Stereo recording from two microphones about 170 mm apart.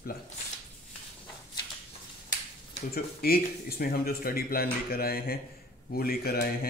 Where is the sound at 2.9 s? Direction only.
60° left (ahead or behind).